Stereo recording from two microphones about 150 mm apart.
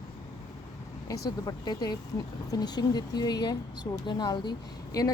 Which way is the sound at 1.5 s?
25° left (ahead or behind).